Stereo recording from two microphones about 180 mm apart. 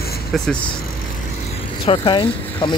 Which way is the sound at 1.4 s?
30° left (ahead or behind).